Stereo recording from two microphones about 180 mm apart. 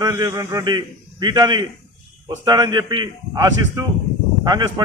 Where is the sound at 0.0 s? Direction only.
20° right (ahead or behind).